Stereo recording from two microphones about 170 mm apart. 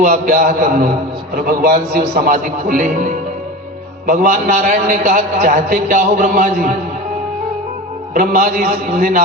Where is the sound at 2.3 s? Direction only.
50° right (ahead or behind).